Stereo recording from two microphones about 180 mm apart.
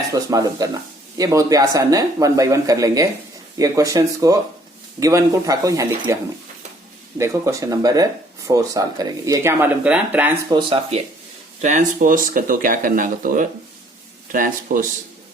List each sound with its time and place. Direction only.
0.1 s speech: 20° right (ahead or behind)
7.2 s speech: 15° right (ahead or behind)
10.5 s speech: 25° right (ahead or behind)
11.6 s speech: 45° right (ahead or behind)